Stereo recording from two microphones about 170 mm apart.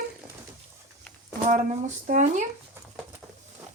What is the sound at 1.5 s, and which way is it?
Speech, 45° right (ahead or behind).